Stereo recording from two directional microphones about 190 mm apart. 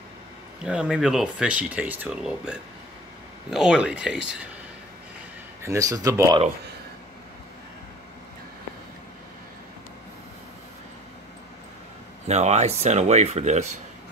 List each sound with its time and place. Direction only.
0.6 s speech: 5° right (ahead or behind)
5.6 s speech: 15° right (ahead or behind)
12.3 s speech: 35° right (ahead or behind)